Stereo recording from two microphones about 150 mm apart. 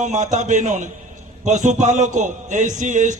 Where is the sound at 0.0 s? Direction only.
55° right (ahead or behind).